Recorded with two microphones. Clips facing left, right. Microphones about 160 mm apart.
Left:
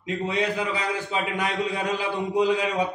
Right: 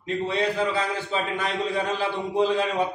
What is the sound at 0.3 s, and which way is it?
A man's voice, 15° left (ahead or behind).